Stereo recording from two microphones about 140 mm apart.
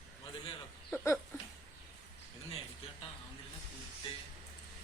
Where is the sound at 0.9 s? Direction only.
15° left (ahead or behind).